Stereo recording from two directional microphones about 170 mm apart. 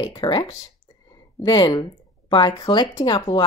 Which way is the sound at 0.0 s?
25° left (ahead or behind).